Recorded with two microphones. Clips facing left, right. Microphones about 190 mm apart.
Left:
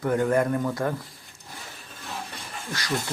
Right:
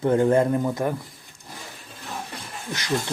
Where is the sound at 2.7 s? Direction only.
20° right (ahead or behind).